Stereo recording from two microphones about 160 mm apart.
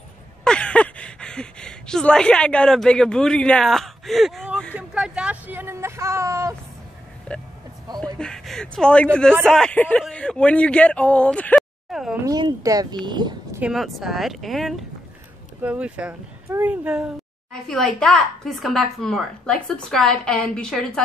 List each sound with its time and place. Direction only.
0.4 s speech: 5° left (ahead or behind); by 6.5 s 15° right (ahead or behind)
7.3 s speech: 5° left (ahead or behind)
12.3 s speech: 25° right (ahead or behind)
13.6 s speech: 5° right (ahead or behind)
17.5 s speech: 5° left (ahead or behind)